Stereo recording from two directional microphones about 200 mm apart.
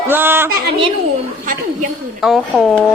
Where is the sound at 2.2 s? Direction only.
Centre (ahead or behind).